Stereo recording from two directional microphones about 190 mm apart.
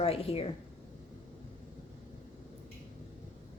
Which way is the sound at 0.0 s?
30° left (ahead or behind).